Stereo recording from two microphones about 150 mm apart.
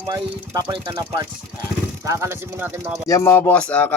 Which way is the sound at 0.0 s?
30° right (ahead or behind).